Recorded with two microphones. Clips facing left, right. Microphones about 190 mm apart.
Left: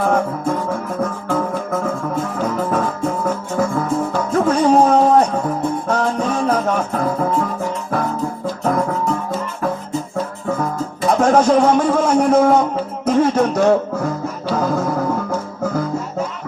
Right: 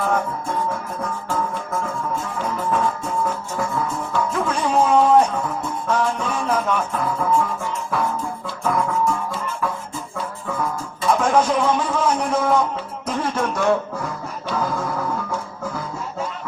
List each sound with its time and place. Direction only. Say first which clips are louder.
0.0 s music: left 5 dB; 45° left (ahead or behind)